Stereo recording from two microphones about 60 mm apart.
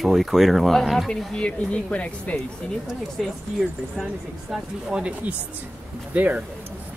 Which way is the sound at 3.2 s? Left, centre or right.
Centre.